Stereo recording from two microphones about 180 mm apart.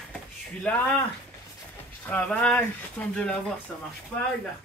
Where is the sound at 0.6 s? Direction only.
5° left (ahead or behind).